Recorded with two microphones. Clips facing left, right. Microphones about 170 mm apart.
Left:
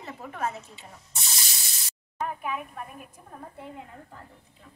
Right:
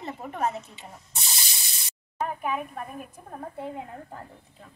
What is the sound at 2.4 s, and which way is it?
A woman's voice, 40° right (ahead or behind).